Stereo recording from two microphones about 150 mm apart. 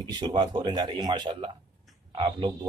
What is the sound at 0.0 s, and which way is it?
Speech, 30° right (ahead or behind).